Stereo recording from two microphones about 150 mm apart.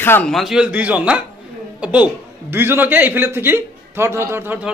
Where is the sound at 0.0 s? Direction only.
15° left (ahead or behind).